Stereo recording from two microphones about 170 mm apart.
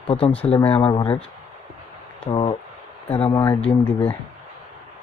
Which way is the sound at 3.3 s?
20° left (ahead or behind).